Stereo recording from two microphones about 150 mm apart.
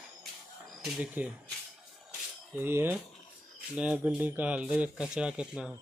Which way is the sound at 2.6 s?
15° right (ahead or behind).